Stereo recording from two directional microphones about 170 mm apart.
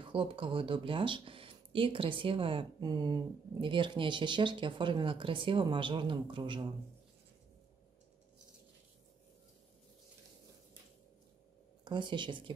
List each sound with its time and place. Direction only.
0.0 s speech: 30° right (ahead or behind)
11.8 s speech: 25° right (ahead or behind)